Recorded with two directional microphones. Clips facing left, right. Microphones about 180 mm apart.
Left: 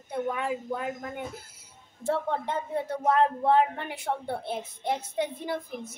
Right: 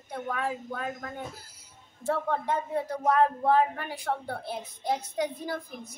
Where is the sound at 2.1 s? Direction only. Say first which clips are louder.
Even; 25° left (ahead or behind).